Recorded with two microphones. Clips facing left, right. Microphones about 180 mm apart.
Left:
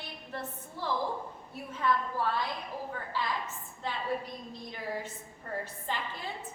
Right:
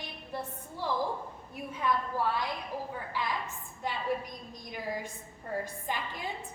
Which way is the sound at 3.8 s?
15° right (ahead or behind).